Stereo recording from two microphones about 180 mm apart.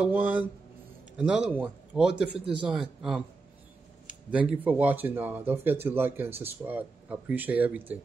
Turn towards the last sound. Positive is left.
turn(degrees=-10)  # may be behind; listen again after turning